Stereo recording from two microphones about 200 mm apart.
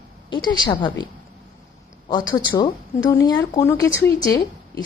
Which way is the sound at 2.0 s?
20° left (ahead or behind).